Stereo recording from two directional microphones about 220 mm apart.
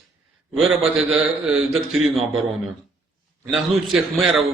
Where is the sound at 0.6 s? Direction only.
Centre (ahead or behind).